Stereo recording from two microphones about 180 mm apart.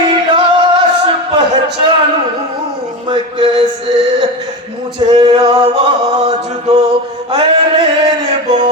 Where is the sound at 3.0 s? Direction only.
25° right (ahead or behind).